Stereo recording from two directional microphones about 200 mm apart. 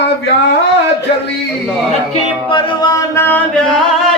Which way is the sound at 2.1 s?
25° left (ahead or behind).